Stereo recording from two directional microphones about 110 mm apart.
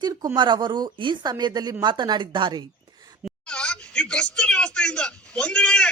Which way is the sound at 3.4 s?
10° left (ahead or behind).